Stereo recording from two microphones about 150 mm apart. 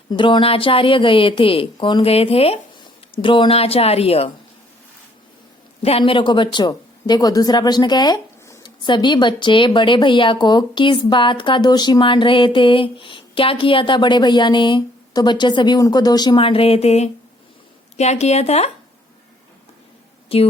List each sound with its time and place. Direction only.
0.1 s speech: 30° left (ahead or behind)
5.8 s speech: 40° left (ahead or behind)
20.3 s speech: 40° left (ahead or behind)